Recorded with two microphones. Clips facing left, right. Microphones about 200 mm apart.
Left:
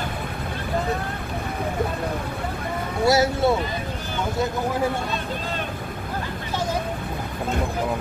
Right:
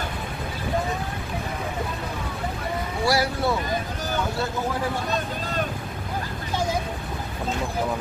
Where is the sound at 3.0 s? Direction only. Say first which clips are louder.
Left 5 dB; 25° left (ahead or behind).